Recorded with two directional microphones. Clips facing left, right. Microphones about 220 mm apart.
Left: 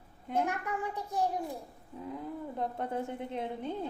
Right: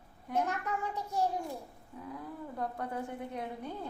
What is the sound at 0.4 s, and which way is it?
A child's voice, 15° left (ahead or behind).